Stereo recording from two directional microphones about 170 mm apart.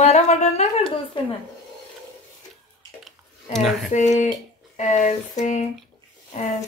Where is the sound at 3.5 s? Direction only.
Centre (ahead or behind).